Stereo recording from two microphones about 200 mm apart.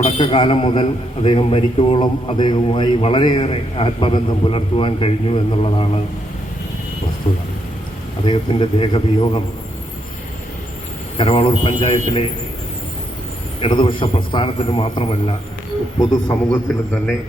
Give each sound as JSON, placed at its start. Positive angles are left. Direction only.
{"t": 0.2, "sound": "a man's voice", "side_deg": 25}
{"t": 8.2, "sound": "a man's voice", "side_deg": 25}
{"t": 11.2, "sound": "a man's voice", "side_deg": 25}
{"t": 13.6, "sound": "a man's voice", "side_deg": 25}